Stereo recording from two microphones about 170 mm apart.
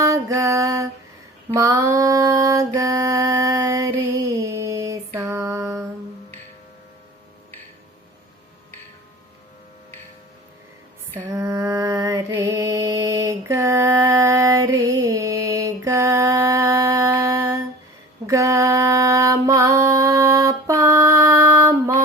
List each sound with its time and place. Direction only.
0.0 s music: 20° right (ahead or behind)
1.5 s mantra: 20° right (ahead or behind)
11.3 s mantra: 20° right (ahead or behind)
18.3 s female singing: 15° right (ahead or behind)
20.7 s music: 15° right (ahead or behind)